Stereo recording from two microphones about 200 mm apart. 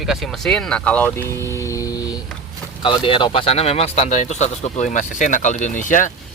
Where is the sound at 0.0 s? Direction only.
Centre (ahead or behind).